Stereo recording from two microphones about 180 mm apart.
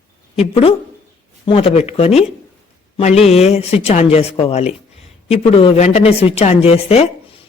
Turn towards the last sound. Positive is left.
turn(degrees=35)  # may be behind; listen again after turning